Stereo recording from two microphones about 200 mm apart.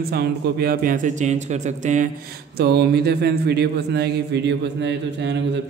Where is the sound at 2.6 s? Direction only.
55° right (ahead or behind).